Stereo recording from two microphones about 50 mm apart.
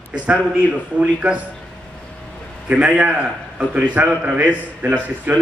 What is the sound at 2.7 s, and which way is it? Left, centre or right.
A man's voice, right.